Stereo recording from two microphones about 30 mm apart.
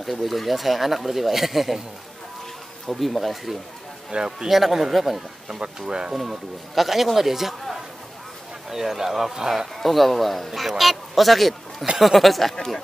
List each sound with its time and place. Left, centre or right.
0.0 s speech: centre
2.9 s speech: centre
4.1 s speech: right
4.5 s speech: centre
5.8 s speech: right
6.1 s speech: centre
8.6 s speech: centre
9.8 s speech: centre
12.5 s speech: centre